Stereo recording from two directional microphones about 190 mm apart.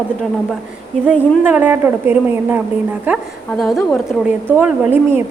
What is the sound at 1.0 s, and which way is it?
A woman's voice, 5° right (ahead or behind).